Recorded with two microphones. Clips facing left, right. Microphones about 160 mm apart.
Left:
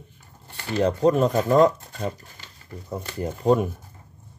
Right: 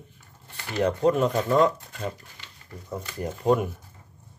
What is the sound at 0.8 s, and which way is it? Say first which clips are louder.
Speech: left 2 dB; 35° left (ahead or behind).